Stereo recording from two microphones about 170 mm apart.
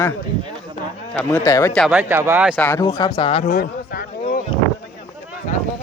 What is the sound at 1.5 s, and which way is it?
Speech, 20° left (ahead or behind).